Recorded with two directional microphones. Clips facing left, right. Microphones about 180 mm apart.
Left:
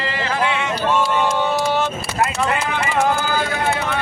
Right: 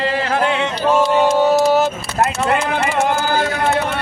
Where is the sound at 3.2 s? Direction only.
45° right (ahead or behind).